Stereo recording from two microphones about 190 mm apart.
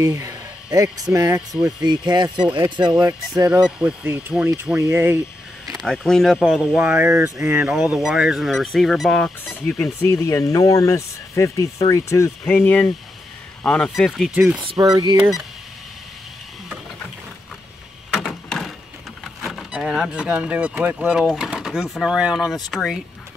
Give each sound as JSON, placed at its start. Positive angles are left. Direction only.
{"t": 0.0, "sound": "a sound", "side_deg": -20}
{"t": 1.0, "sound": "speech", "side_deg": -15}
{"t": 3.6, "sound": "speech", "side_deg": -5}
{"t": 5.8, "sound": "speech", "side_deg": 0}
{"t": 14.6, "sound": "speech", "side_deg": -25}
{"t": 18.1, "sound": "a sound", "side_deg": 0}
{"t": 19.4, "sound": "speech", "side_deg": 0}